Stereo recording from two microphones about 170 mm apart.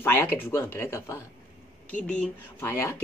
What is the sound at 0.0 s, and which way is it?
Speech, 10° left (ahead or behind).